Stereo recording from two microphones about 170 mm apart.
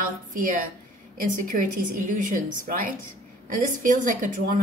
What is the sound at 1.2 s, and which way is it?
A woman's voice, 50° right (ahead or behind).